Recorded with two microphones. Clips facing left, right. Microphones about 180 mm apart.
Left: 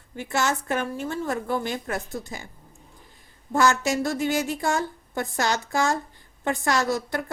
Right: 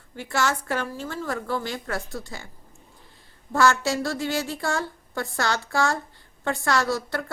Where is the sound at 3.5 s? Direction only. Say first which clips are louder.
Even; 20° left (ahead or behind).